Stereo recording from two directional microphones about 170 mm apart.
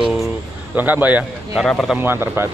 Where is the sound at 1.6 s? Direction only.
5° left (ahead or behind).